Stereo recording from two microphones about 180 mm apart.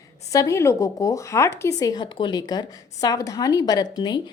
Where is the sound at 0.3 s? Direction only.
15° left (ahead or behind).